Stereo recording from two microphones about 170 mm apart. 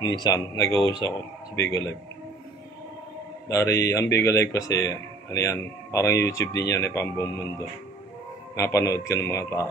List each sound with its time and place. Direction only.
0.0 s a man's voice: 25° left (ahead or behind)
3.4 s a man's voice: 20° left (ahead or behind)